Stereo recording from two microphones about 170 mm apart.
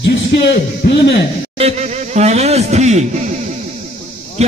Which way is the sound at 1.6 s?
40° right (ahead or behind).